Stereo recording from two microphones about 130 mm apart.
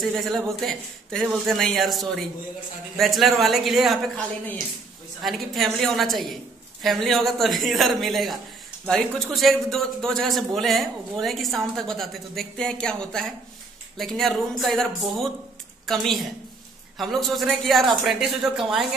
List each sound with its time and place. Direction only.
0.0 s a man's voice: centre (ahead or behind)
5.2 s a man's voice: centre (ahead or behind)